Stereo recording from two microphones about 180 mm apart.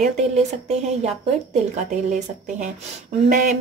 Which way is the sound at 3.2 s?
45° right (ahead or behind).